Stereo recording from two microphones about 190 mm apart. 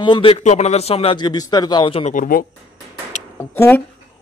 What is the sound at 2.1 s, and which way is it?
Speech, 45° left (ahead or behind).